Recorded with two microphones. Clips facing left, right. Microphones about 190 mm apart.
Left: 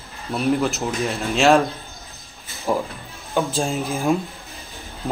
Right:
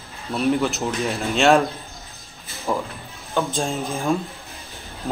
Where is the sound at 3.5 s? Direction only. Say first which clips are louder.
Left 1 dB; centre (ahead or behind).